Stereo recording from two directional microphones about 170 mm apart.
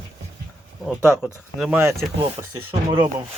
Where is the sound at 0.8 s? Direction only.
5° right (ahead or behind).